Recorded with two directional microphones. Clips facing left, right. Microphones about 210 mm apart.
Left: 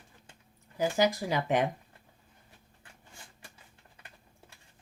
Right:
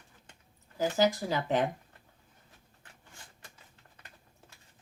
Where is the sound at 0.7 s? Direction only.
15° left (ahead or behind).